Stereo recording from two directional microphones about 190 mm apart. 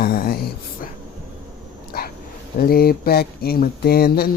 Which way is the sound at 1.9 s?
55° left (ahead or behind).